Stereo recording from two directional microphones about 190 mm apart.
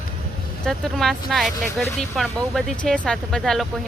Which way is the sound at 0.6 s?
Centre (ahead or behind).